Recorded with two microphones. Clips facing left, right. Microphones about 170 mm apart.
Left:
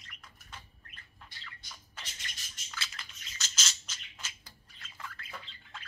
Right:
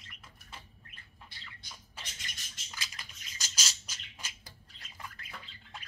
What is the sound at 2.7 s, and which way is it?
Squawk, 15° right (ahead or behind).